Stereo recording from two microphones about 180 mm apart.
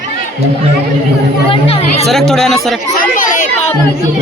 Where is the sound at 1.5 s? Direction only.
30° left (ahead or behind).